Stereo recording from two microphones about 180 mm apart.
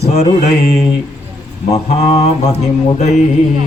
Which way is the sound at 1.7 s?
35° left (ahead or behind).